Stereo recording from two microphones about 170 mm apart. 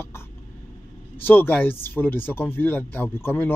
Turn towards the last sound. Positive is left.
turn(degrees=15)  # may be behind; listen again after turning